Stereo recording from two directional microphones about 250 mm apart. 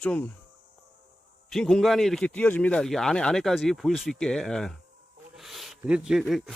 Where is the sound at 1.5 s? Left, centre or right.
Centre.